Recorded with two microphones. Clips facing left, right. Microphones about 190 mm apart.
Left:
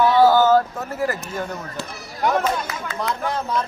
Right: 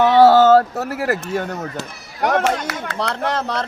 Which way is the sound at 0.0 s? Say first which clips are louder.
Right 4 dB; 75° right (ahead or behind).